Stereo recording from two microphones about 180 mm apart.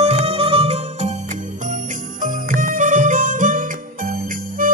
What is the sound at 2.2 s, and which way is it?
Music, 45° right (ahead or behind).